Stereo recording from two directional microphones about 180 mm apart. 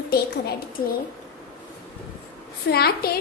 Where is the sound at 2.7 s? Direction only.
60° left (ahead or behind).